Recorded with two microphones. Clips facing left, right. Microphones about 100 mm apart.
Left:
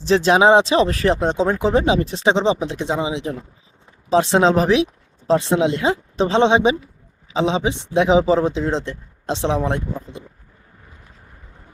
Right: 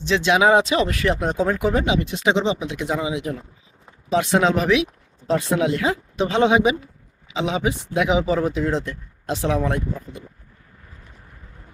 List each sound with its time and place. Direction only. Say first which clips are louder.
0.0 s speech: left 4 dB; 35° left (ahead or behind)